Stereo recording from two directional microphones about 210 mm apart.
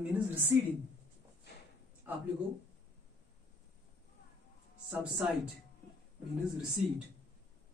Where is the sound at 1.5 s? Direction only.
50° left (ahead or behind).